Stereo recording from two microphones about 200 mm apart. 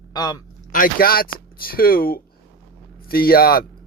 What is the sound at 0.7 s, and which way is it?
Speech, 45° left (ahead or behind).